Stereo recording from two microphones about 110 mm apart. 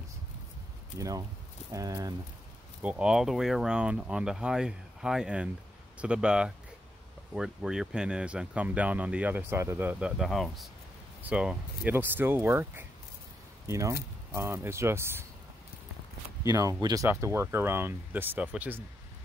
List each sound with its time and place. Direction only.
0.9 s speech: 30° right (ahead or behind)
2.8 s speech: 10° right (ahead or behind)
11.2 s speech: 10° right (ahead or behind)
16.4 s speech: 30° right (ahead or behind); by 18.9 s 15° right (ahead or behind)